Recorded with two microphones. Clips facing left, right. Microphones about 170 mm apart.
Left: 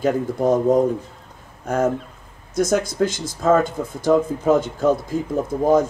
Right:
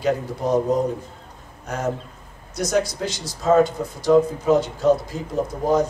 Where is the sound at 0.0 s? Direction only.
50° left (ahead or behind).